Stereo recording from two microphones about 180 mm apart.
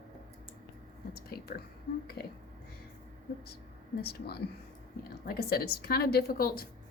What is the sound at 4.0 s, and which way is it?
A woman's voice, 60° left (ahead or behind).